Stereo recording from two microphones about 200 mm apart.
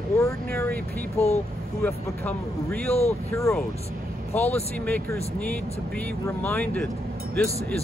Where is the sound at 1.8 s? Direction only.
5° left (ahead or behind).